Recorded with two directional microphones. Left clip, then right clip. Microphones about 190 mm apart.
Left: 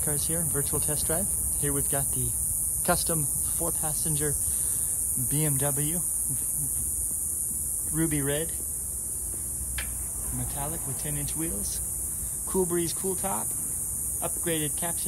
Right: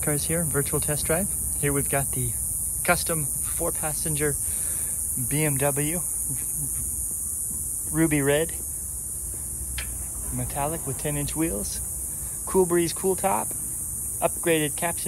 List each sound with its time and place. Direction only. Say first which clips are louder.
0.0 s speech: right 5 dB; 15° left (ahead or behind)
7.9 s speech: right 7 dB; 15° left (ahead or behind)
10.3 s speech: right 8 dB; 15° left (ahead or behind)